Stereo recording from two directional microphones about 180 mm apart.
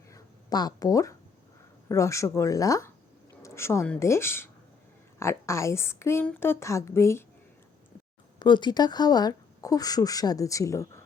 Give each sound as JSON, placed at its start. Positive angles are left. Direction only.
{"t": 0.1, "sound": "a sound", "side_deg": 20}
{"t": 1.9, "sound": "a woman's voice", "side_deg": 15}
{"t": 8.4, "sound": "speech", "side_deg": 25}